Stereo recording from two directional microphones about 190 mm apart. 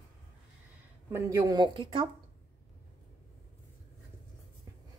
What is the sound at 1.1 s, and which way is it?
Speech, 20° right (ahead or behind).